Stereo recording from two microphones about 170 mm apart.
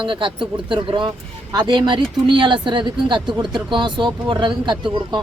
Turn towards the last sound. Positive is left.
turn(degrees=-25)  # may be behind; listen again after turning